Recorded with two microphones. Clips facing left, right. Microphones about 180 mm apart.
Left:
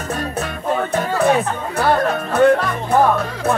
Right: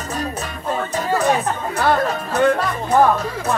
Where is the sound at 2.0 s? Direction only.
60° left (ahead or behind).